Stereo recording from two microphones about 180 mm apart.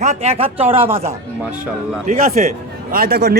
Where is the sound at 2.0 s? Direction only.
50° right (ahead or behind).